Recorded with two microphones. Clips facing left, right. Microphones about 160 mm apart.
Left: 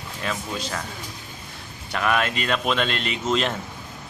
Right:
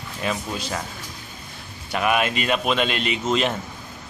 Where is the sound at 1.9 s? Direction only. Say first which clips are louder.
Right 2 dB; 15° right (ahead or behind).